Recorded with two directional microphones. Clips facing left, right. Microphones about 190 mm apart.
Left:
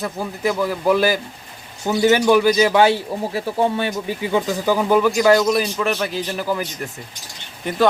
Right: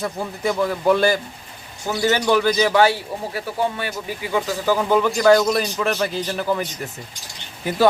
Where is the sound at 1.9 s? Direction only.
15° left (ahead or behind).